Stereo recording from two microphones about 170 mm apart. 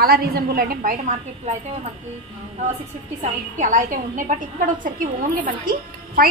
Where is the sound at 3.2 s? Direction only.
45° right (ahead or behind).